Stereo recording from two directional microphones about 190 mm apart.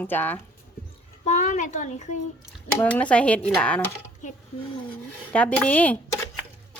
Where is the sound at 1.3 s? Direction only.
40° left (ahead or behind).